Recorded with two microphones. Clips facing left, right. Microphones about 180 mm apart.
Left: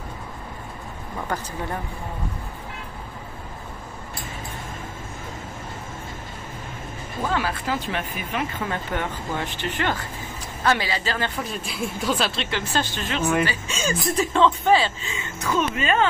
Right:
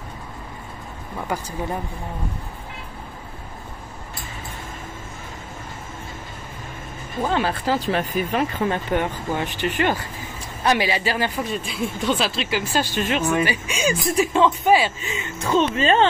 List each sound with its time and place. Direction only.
1.2 s speech: 10° right (ahead or behind)
7.2 s speech: 25° right (ahead or behind)
8.9 s speech: 15° right (ahead or behind)
11.3 s speech: centre (ahead or behind)
12.7 s speech: 15° right (ahead or behind); by 16.1 s 30° right (ahead or behind)